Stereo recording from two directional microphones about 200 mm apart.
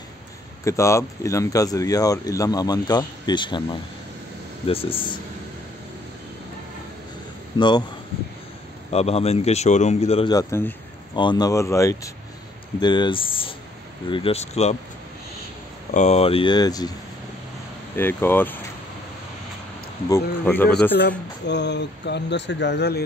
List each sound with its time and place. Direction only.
0.7 s speech: 15° left (ahead or behind)
4.6 s speech: 30° left (ahead or behind)
7.5 s speech: 20° left (ahead or behind)
8.9 s a man's voice: 30° left (ahead or behind)
10.3 s a man's voice: 15° left (ahead or behind); by 14.8 s 35° left (ahead or behind)
15.9 s speech: 35° left (ahead or behind); by 16.9 s 20° left (ahead or behind)
17.9 s speech: 10° left (ahead or behind)
20.1 s speech: 10° left (ahead or behind)
21.5 s speech: 60° left (ahead or behind)